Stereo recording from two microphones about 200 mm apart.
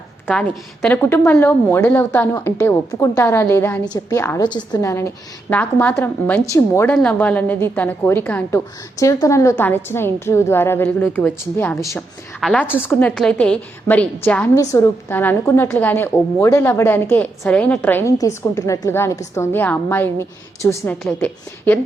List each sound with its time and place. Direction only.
0.3 s a woman's voice: 5° left (ahead or behind)
12.4 s a woman's voice: centre (ahead or behind)
12.8 s a woman's voice: 10° left (ahead or behind)